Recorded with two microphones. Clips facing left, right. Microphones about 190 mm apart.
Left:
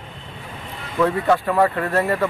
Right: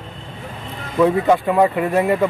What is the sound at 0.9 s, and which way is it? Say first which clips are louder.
A man's voice: right 3 dB; 15° right (ahead or behind).